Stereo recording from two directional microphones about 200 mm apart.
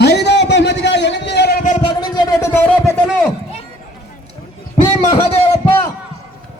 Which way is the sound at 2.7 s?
5° left (ahead or behind).